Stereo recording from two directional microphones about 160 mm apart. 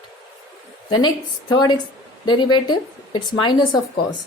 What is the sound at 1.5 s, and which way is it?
A woman's voice, 25° left (ahead or behind).